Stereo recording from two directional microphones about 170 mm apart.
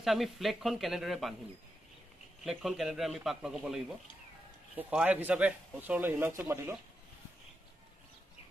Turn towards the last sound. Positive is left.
turn(degrees=-15)  # may be behind; listen again after turning